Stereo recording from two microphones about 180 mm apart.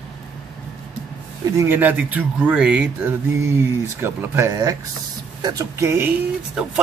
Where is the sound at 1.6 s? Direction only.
10° right (ahead or behind).